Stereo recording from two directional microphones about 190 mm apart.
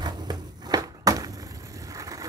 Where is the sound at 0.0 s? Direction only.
20° right (ahead or behind).